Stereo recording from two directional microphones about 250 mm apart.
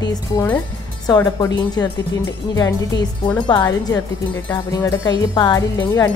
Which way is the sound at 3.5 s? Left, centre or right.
Centre.